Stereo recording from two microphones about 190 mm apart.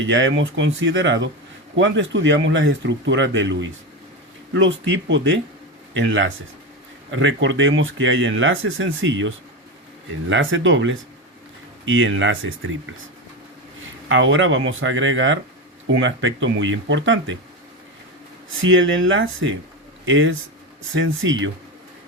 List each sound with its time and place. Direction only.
0.0 s speech: 75° right (ahead or behind)
14.1 s speech: 90° right
18.6 s speech: 90° right